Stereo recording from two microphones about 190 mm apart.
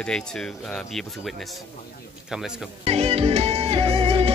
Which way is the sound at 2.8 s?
35° right (ahead or behind).